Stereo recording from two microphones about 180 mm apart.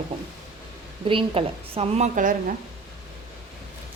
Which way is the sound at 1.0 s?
30° right (ahead or behind).